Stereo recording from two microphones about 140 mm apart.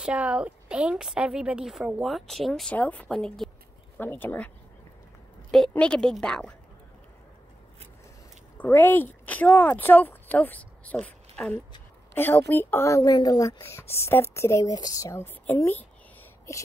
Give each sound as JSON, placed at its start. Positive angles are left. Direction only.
{"t": 0.0, "sound": "a woman's voice", "side_deg": -10}
{"t": 4.0, "sound": "speech", "side_deg": 15}
{"t": 5.5, "sound": "a woman's voice", "side_deg": 5}
{"t": 8.5, "sound": "a woman's voice", "side_deg": 15}